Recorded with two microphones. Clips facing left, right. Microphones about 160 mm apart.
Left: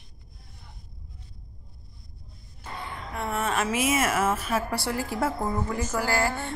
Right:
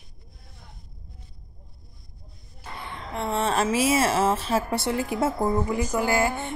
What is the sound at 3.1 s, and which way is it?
A woman's voice, 25° right (ahead or behind).